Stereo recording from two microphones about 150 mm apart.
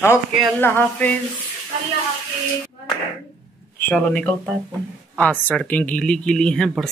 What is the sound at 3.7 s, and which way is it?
Speech, 10° left (ahead or behind).